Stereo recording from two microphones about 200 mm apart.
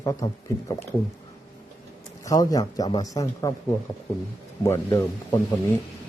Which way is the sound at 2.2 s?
15° left (ahead or behind).